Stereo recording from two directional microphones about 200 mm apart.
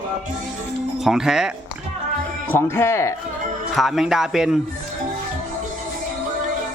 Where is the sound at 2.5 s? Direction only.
10° left (ahead or behind).